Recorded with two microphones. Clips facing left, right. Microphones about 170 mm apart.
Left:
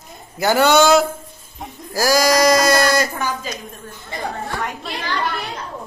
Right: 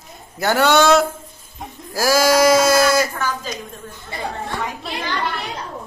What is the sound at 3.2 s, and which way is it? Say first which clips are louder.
Speech: even; 15° left (ahead or behind).